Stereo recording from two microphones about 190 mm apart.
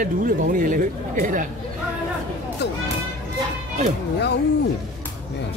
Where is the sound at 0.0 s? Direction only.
45° right (ahead or behind).